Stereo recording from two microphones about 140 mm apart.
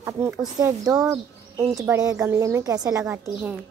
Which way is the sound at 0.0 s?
20° right (ahead or behind).